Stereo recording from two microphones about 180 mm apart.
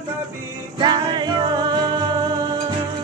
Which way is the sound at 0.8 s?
25° right (ahead or behind).